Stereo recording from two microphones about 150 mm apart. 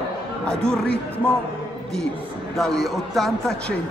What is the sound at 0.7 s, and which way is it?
Speech, 5° left (ahead or behind).